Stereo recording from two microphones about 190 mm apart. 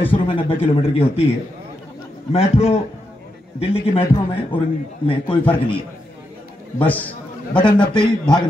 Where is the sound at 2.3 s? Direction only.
30° left (ahead or behind).